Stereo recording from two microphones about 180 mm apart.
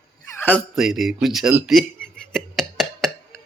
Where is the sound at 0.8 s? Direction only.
Centre (ahead or behind).